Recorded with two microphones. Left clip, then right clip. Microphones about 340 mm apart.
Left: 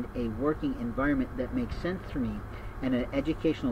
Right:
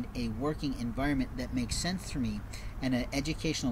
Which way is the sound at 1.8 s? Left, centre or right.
Right.